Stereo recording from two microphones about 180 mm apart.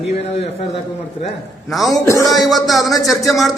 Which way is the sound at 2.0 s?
20° left (ahead or behind).